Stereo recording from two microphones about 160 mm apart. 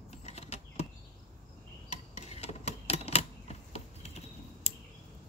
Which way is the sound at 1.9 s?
45° left (ahead or behind).